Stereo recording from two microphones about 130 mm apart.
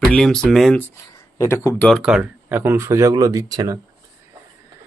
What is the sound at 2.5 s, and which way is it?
Speech, 15° right (ahead or behind).